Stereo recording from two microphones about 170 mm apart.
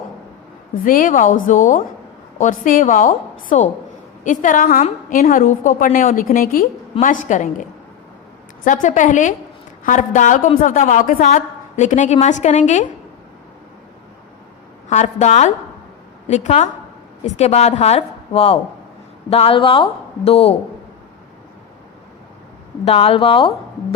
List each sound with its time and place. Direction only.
0.9 s a woman's voice: 55° left (ahead or behind)
14.8 s a woman's voice: 40° left (ahead or behind)
22.9 s a woman's voice: 35° left (ahead or behind)